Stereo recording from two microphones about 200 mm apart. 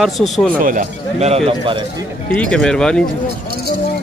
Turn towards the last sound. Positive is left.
turn(degrees=5)  # may be behind; listen again after turning